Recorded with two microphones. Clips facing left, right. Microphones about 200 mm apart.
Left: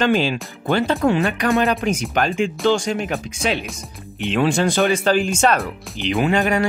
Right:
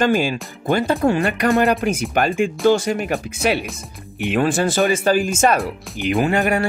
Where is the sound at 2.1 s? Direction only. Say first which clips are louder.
Right 1 dB; 10° right (ahead or behind).